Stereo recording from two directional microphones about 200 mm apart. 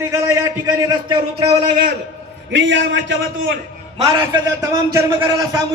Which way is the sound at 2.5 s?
65° right (ahead or behind).